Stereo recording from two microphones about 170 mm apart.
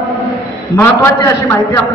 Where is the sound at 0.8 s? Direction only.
15° left (ahead or behind).